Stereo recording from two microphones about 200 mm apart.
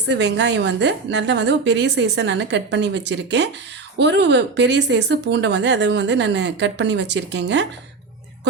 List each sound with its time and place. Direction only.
0.1 s speech: 60° right (ahead or behind)